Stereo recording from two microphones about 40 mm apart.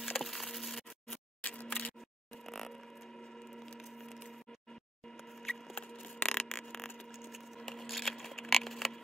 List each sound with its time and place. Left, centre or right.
0.0 s wood: centre
1.6 s single-lens reflex camera: left
2.4 s vehicle: centre
5.4 s wood: centre
5.8 s a sound: left
7.6 s a sound: centre